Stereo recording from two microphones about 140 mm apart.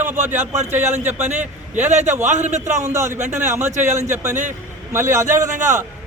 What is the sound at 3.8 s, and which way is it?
Speech, 55° right (ahead or behind).